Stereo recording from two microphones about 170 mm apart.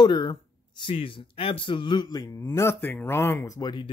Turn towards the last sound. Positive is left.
turn(degrees=25)  # may be behind; listen again after turning